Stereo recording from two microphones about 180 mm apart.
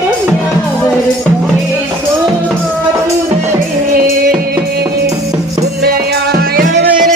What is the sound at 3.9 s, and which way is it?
Music, 55° right (ahead or behind).